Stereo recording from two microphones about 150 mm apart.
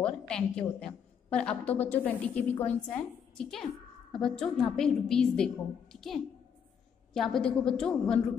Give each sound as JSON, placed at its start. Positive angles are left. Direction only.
{"t": 0.0, "sound": "a woman's voice", "side_deg": 5}